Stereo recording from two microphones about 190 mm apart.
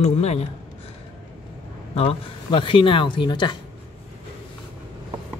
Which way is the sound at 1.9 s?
30° left (ahead or behind).